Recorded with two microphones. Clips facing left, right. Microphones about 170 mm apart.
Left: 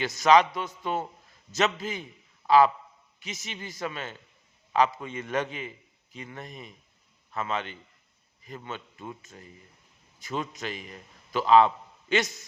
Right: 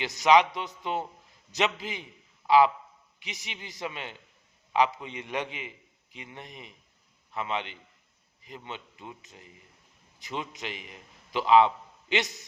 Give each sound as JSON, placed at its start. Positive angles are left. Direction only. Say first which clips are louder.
{"t": 0.0, "sound": "a man's voice", "louder": "left 1 dB", "side_deg": -20}